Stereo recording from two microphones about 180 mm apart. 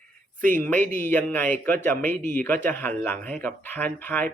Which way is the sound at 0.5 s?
10° left (ahead or behind).